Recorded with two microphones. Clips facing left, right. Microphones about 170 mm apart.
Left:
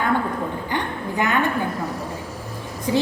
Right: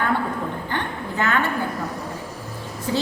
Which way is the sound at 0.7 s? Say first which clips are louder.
Left 2 dB; 15° left (ahead or behind).